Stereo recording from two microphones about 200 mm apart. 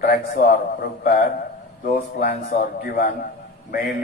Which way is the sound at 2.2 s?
45° left (ahead or behind).